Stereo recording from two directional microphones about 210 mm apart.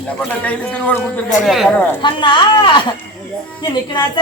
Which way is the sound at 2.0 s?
20° left (ahead or behind).